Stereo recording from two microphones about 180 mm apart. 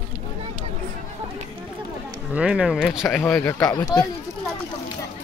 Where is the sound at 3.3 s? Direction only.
15° left (ahead or behind).